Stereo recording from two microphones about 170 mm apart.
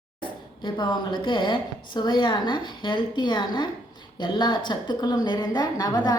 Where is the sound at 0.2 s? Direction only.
25° left (ahead or behind).